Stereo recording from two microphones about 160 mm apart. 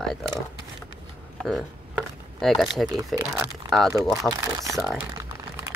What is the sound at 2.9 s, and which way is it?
Speech, 15° right (ahead or behind).